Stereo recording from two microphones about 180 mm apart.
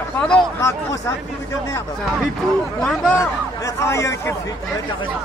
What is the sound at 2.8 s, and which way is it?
Speech, 5° left (ahead or behind).